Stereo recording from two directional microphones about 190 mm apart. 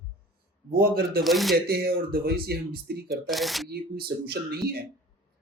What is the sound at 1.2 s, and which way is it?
Speech, centre (ahead or behind).